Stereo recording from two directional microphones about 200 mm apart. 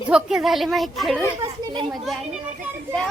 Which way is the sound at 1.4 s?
20° right (ahead or behind).